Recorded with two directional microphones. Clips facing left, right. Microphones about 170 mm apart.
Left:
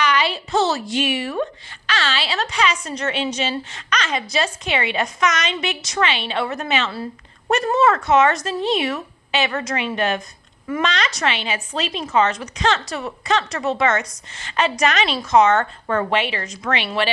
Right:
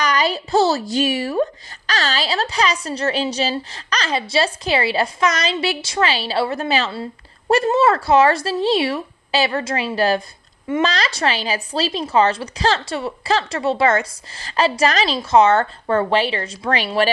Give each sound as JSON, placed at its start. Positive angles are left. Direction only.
{"t": 0.0, "sound": "a woman's voice", "side_deg": -40}